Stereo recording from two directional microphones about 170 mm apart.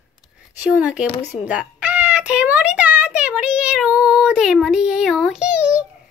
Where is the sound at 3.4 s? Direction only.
5° right (ahead or behind).